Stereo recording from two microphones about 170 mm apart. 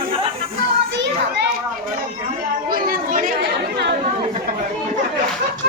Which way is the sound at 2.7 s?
55° right (ahead or behind).